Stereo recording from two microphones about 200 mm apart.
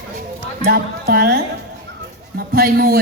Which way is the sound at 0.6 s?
50° right (ahead or behind).